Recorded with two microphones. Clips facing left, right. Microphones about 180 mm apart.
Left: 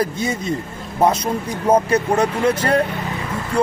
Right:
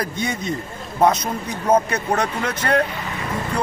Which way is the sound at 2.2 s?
30° left (ahead or behind).